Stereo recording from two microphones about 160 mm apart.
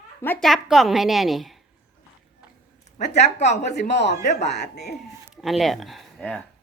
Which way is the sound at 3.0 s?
45° left (ahead or behind).